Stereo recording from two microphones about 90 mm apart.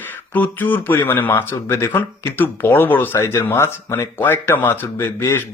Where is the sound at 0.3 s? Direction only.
20° left (ahead or behind).